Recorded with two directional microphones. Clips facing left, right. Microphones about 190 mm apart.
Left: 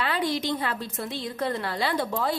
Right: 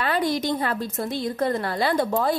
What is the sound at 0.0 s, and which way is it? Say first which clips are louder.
A woman's voice: right 3 dB; 45° right (ahead or behind).